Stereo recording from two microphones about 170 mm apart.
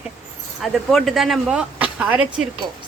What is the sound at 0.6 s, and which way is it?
Speech, centre (ahead or behind).